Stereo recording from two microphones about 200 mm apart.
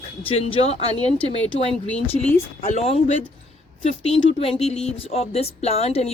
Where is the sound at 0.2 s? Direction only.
30° left (ahead or behind).